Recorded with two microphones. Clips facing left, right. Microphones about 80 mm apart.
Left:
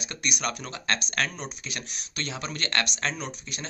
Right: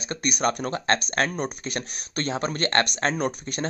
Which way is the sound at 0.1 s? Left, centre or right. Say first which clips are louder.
Right 7 dB; right.